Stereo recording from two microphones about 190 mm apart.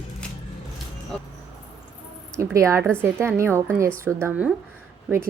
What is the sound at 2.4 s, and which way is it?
Speech, 15° right (ahead or behind).